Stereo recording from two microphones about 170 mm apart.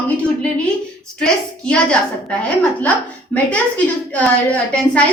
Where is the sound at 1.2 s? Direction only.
5° left (ahead or behind).